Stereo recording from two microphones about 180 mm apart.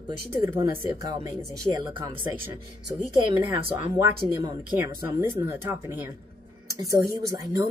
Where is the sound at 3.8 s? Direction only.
15° right (ahead or behind).